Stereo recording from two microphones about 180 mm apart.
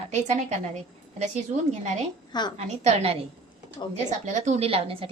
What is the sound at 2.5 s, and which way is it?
A woman's voice, 40° right (ahead or behind).